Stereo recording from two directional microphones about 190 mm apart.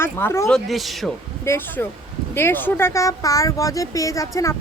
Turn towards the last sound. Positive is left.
turn(degrees=15)  # may be behind; listen again after turning